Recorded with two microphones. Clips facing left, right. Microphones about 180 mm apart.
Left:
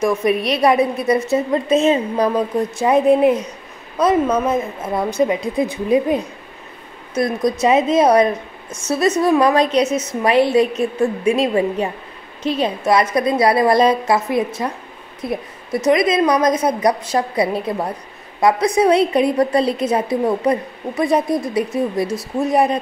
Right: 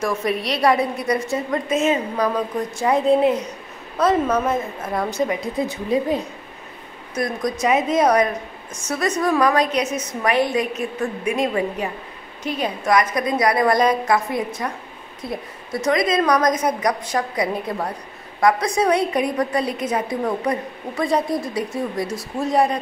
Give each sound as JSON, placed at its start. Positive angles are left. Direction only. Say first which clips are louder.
{"t": 0.0, "sound": "a woman's voice", "louder": "left 5 dB", "side_deg": 20}
{"t": 2.8, "sound": "a woman's voice", "louder": "left 3 dB", "side_deg": 20}
{"t": 7.6, "sound": "a woman's voice", "louder": "left 3 dB", "side_deg": 25}